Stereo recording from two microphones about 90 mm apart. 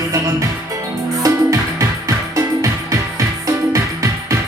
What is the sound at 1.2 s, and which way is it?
Music, 35° right (ahead or behind).